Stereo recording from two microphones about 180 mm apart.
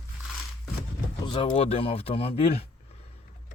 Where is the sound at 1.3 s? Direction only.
25° left (ahead or behind).